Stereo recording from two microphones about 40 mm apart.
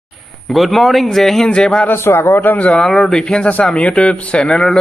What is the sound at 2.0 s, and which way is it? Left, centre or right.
Speech, left.